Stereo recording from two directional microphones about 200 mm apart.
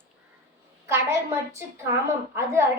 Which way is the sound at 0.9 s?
15° right (ahead or behind).